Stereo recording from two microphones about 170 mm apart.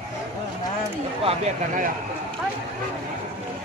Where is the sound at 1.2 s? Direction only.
45° right (ahead or behind).